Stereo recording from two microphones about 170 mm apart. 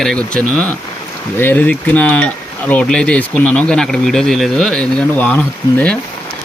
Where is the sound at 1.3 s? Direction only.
10° left (ahead or behind).